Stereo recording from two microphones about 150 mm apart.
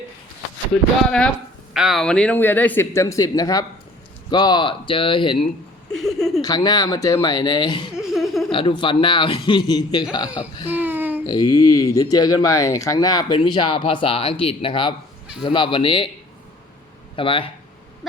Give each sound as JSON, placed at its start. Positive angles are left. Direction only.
{"t": 0.7, "sound": "a man's voice", "side_deg": 5}
{"t": 5.9, "sound": "speech", "side_deg": 5}
{"t": 6.4, "sound": "speech", "side_deg": 25}
{"t": 7.9, "sound": "laughter", "side_deg": 0}
{"t": 8.5, "sound": "a man's voice", "side_deg": 30}
{"t": 10.2, "sound": "burping", "side_deg": -10}
{"t": 11.3, "sound": "a man's voice", "side_deg": 25}
{"t": 17.2, "sound": "a man's voice", "side_deg": 35}